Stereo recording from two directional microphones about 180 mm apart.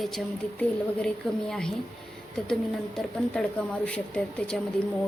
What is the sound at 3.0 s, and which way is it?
A woman's voice, 5° left (ahead or behind).